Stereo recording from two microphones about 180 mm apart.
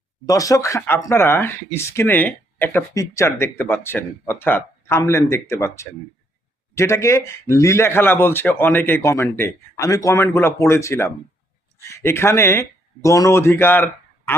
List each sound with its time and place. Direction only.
0.3 s speech: 20° left (ahead or behind)